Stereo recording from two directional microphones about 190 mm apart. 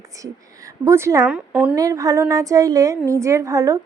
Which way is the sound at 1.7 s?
20° right (ahead or behind).